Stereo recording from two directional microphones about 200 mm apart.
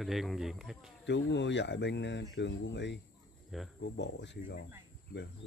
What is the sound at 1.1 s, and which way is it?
Speech, 60° left (ahead or behind).